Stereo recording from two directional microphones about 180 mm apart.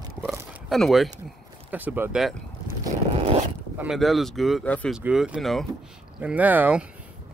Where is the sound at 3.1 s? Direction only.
35° right (ahead or behind).